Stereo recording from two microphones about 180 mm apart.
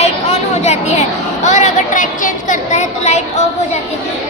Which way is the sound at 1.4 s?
45° left (ahead or behind).